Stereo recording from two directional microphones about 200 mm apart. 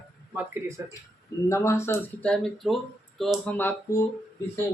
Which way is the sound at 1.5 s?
15° left (ahead or behind).